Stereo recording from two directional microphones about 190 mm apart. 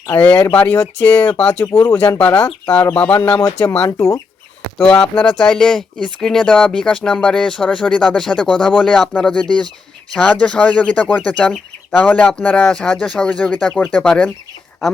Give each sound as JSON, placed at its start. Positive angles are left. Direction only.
{"t": 0.1, "sound": "speech", "side_deg": 10}
{"t": 3.2, "sound": "speech", "side_deg": 20}
{"t": 4.9, "sound": "speech", "side_deg": 5}